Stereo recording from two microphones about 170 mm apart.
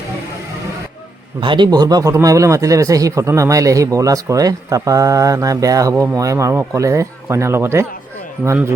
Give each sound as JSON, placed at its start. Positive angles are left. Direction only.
{"t": 1.4, "sound": "speech", "side_deg": -30}